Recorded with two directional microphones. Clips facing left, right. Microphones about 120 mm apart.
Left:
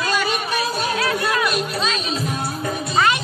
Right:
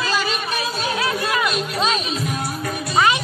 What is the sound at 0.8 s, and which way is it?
Music, 60° left (ahead or behind).